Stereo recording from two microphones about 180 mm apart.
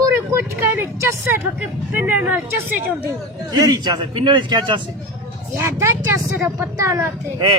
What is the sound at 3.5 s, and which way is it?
A man's voice, 25° right (ahead or behind).